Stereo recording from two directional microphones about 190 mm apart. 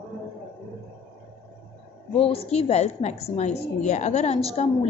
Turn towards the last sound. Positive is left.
turn(degrees=30)  # may be behind; listen again after turning